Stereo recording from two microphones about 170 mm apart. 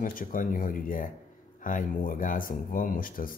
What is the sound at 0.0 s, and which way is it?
Speech, 55° left (ahead or behind).